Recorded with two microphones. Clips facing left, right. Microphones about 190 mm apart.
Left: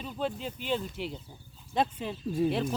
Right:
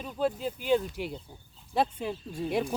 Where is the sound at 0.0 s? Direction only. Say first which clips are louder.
Right 4 dB; 5° right (ahead or behind).